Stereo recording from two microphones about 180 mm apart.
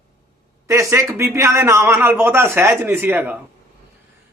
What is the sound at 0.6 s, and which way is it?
A man's voice, 15° right (ahead or behind).